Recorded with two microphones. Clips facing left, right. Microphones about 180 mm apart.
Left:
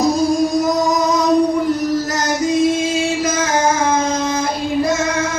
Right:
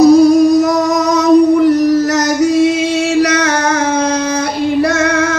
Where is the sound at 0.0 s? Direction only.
70° right (ahead or behind).